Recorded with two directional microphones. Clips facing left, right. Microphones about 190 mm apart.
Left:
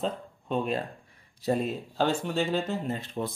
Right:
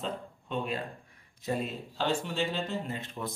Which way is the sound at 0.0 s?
40° left (ahead or behind).